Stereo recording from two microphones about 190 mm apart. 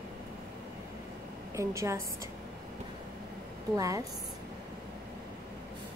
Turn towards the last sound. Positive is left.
turn(degrees=-15)  # may be behind; listen again after turning